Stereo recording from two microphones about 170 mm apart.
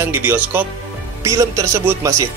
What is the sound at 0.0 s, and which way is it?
Speech, 10° right (ahead or behind).